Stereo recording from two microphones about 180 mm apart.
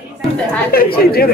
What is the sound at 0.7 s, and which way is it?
Speech, 60° left (ahead or behind).